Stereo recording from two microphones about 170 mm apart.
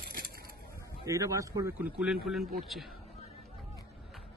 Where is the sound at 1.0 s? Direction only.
20° right (ahead or behind).